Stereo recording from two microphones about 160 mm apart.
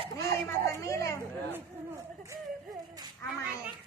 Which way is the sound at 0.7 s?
20° left (ahead or behind).